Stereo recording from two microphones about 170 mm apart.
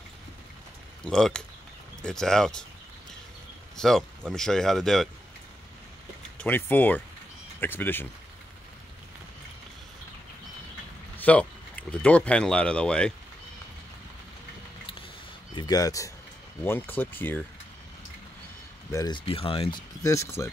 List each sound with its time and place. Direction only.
1.0 s speech: 5° left (ahead or behind)
3.7 s speech: 5° left (ahead or behind)
6.4 s speech: 10° left (ahead or behind)
11.1 s speech: 10° left (ahead or behind)
15.5 s speech: 25° left (ahead or behind)
18.9 s speech: 20° left (ahead or behind)
20.0 s speech: 15° left (ahead or behind)